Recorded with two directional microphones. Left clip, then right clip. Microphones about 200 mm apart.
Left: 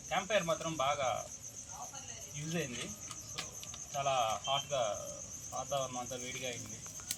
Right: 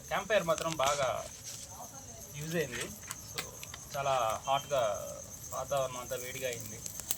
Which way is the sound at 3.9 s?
Centre (ahead or behind).